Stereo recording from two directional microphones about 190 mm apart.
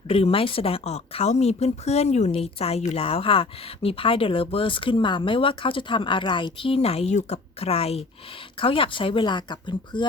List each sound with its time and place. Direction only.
0.1 s speech: 30° left (ahead or behind)